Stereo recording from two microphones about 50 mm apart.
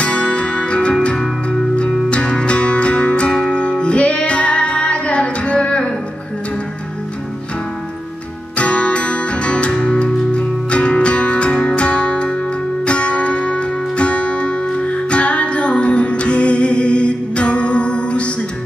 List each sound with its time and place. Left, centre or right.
0.0 s music: left
8.5 s music: left